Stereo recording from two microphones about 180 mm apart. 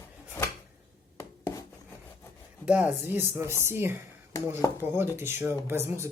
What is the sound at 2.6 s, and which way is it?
Speech, 10° right (ahead or behind).